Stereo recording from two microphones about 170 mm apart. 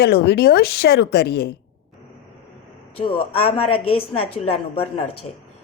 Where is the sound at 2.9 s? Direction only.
30° left (ahead or behind).